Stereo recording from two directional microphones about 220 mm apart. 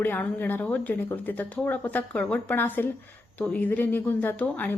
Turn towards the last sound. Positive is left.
turn(degrees=10)  # may be behind; listen again after turning